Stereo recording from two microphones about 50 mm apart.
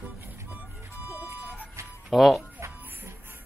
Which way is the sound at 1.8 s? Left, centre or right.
Right.